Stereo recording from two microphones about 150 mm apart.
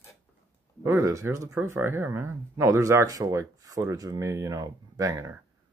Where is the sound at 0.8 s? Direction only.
20° right (ahead or behind).